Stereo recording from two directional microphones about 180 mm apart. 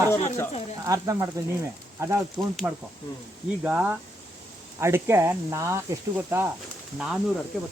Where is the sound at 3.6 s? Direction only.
10° right (ahead or behind).